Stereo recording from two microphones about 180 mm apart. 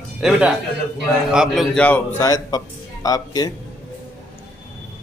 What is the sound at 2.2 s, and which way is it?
Speech, 20° left (ahead or behind).